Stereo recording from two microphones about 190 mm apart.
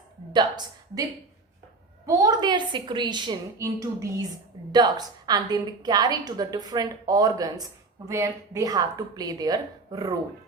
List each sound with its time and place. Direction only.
0.3 s a woman's voice: 20° right (ahead or behind)
2.0 s a woman's voice: 20° right (ahead or behind)